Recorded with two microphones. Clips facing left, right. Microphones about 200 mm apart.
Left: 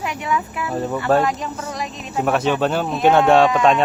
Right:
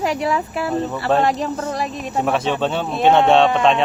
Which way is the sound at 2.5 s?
5° left (ahead or behind).